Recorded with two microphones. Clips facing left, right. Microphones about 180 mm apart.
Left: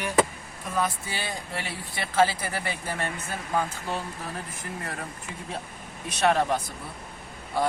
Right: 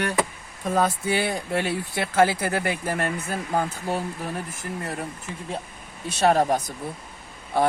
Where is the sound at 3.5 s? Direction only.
40° right (ahead or behind).